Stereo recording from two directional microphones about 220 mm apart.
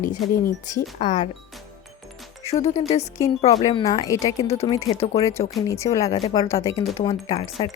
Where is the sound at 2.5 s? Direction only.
30° left (ahead or behind).